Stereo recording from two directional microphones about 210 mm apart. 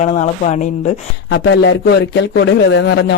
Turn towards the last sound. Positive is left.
turn(degrees=55)  # may be behind; listen again after turning